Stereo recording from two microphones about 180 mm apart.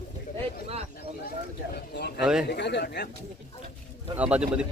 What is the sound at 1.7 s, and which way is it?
A man's voice, 65° left (ahead or behind).